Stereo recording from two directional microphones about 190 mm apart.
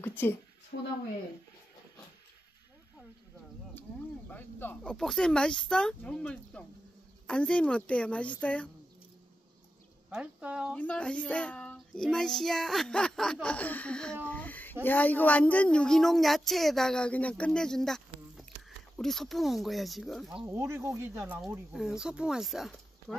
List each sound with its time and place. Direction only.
0.0 s a sound: 10° left (ahead or behind)
0.7 s speech: 60° left (ahead or behind)
4.3 s a woman's voice: 10° left (ahead or behind)
10.0 s speech: 5° right (ahead or behind)
10.7 s a woman's voice: 5° left (ahead or behind)
20.4 s a woman's voice: 15° right (ahead or behind)